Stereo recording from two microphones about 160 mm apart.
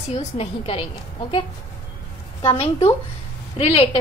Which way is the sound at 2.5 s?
40° left (ahead or behind).